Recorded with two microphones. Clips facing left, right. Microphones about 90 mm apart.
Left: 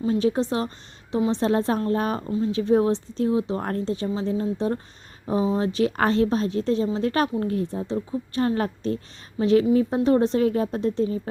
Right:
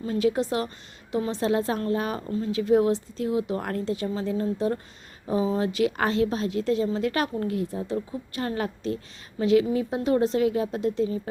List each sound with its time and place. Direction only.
0.1 s a woman's voice: 30° left (ahead or behind)
8.4 s a woman's voice: 35° left (ahead or behind)